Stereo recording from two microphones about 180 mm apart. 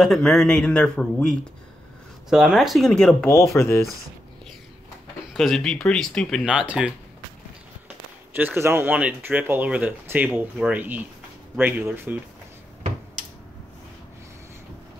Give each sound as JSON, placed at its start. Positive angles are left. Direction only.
{"t": 0.0, "sound": "speech", "side_deg": 0}
{"t": 5.3, "sound": "speech", "side_deg": 0}
{"t": 8.3, "sound": "speech", "side_deg": -10}